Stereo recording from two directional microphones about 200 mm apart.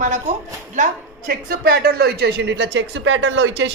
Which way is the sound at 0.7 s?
40° right (ahead or behind).